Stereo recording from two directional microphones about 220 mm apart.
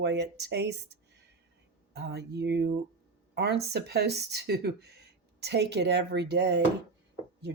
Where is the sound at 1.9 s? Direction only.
50° right (ahead or behind).